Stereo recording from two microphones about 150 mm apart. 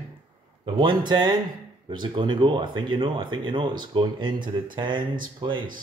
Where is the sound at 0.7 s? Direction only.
30° right (ahead or behind).